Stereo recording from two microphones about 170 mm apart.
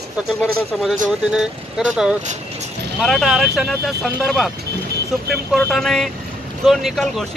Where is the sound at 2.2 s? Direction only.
45° right (ahead or behind).